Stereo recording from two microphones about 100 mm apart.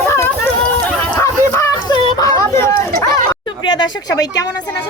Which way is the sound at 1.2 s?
30° left (ahead or behind).